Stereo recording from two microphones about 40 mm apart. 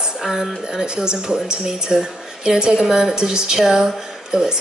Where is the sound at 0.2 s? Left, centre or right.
Centre.